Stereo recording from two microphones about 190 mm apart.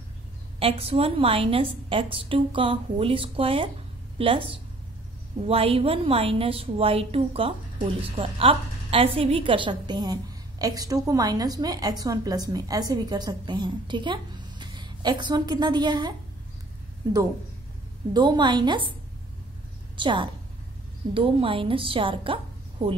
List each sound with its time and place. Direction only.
0.6 s a woman's voice: 30° right (ahead or behind)
18.1 s a woman's voice: 25° right (ahead or behind)
20.0 s a woman's voice: 25° right (ahead or behind)